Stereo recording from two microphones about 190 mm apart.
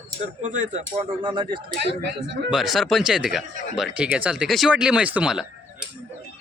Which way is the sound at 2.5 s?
Centre (ahead or behind).